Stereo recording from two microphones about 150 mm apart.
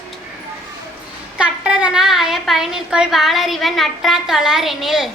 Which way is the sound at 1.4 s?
5° right (ahead or behind).